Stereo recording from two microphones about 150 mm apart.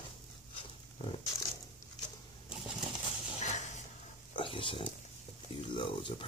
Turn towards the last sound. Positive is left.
turn(degrees=35)  # may be behind; listen again after turning